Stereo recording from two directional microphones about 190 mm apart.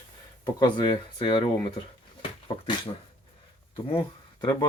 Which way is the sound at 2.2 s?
30° left (ahead or behind).